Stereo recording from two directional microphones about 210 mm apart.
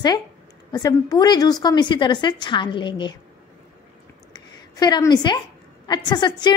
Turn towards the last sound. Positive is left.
turn(degrees=20)  # may be behind; listen again after turning